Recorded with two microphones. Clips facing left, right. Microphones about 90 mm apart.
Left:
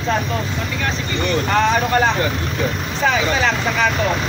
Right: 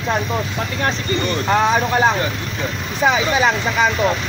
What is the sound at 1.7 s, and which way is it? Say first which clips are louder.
Speech: even; 10° right (ahead or behind).